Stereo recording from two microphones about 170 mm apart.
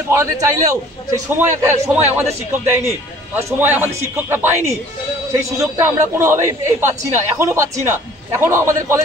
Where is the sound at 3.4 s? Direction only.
10° right (ahead or behind).